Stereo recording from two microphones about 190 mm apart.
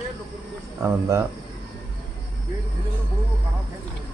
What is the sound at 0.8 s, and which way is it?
Speech, 15° right (ahead or behind).